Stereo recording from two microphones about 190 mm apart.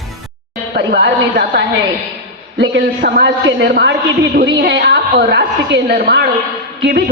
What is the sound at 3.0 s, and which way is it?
A man's voice, 60° right (ahead or behind).